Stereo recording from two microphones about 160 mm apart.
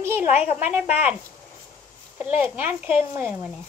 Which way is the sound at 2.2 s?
10° right (ahead or behind).